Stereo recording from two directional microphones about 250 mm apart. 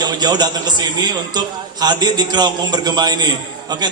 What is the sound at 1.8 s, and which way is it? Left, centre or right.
Music, centre.